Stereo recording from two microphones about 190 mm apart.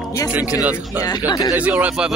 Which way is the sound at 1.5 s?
10° right (ahead or behind).